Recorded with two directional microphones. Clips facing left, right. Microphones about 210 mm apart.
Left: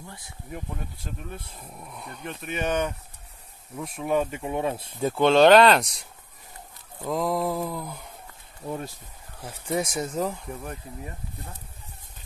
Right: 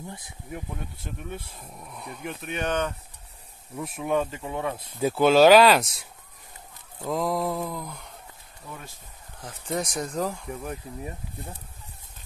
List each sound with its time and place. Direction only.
0.0 s a sound: 20° right (ahead or behind)
0.5 s speech: centre (ahead or behind)
4.4 s speech: 20° left (ahead or behind)
5.0 s speech: 5° right (ahead or behind)
8.6 s speech: 35° left (ahead or behind)
9.4 s speech: 10° left (ahead or behind)